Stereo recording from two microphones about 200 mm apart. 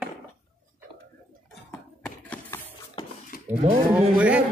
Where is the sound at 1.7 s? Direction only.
10° left (ahead or behind).